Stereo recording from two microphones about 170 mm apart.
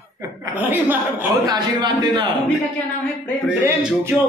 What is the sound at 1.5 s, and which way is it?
Speech, 25° right (ahead or behind).